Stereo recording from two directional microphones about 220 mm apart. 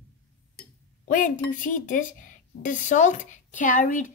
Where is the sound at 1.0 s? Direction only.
35° left (ahead or behind).